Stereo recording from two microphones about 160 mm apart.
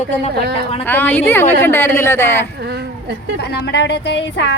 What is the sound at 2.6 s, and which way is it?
Speech, 90° right.